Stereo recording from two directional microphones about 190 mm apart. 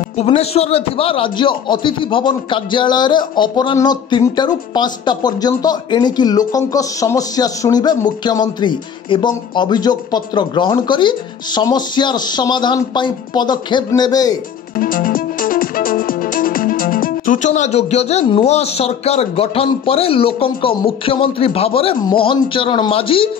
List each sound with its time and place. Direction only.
0.2 s a man's voice: 35° left (ahead or behind)
14.8 s music: 45° left (ahead or behind); by 21.9 s 30° left (ahead or behind)
22.0 s a man's voice: 25° left (ahead or behind)